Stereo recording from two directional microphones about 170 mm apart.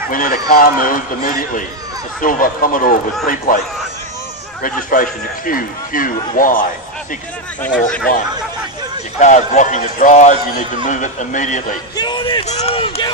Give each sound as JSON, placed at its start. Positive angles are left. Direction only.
{"t": 0.1, "sound": "a man's voice", "side_deg": 55}
{"t": 4.6, "sound": "a man's voice", "side_deg": 55}
{"t": 9.2, "sound": "a man's voice", "side_deg": 45}
{"t": 12.0, "sound": "a sound", "side_deg": 30}
{"t": 12.4, "sound": "speech", "side_deg": 40}